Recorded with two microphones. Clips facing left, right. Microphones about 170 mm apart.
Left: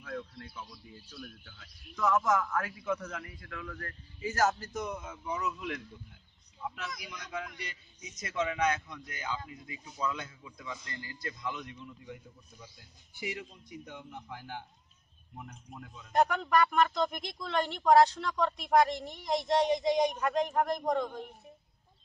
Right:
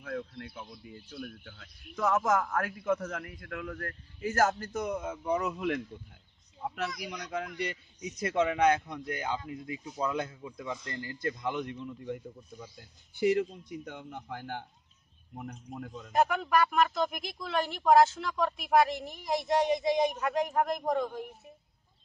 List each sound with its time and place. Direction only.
0.0 s speech: 55° right (ahead or behind)
7.2 s a man's voice: 55° right (ahead or behind)
16.1 s speech: 5° right (ahead or behind)